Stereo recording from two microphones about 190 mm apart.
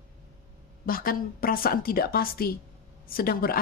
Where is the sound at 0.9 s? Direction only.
50° left (ahead or behind).